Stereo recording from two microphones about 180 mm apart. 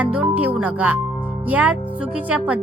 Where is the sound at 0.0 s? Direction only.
5° right (ahead or behind).